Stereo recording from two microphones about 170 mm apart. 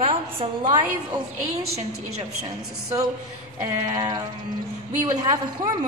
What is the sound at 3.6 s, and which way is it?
A woman's voice, 25° right (ahead or behind).